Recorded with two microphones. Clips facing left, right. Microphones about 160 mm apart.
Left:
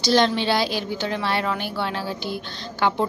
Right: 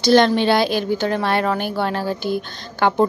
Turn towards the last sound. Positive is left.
turn(degrees=-50)  # may be behind; listen again after turning